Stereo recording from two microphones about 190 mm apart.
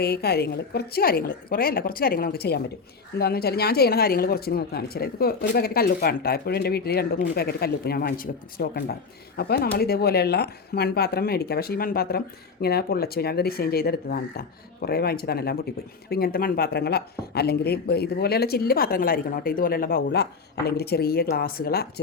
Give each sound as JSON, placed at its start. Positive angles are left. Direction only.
{"t": 0.0, "sound": "a woman's voice", "side_deg": 55}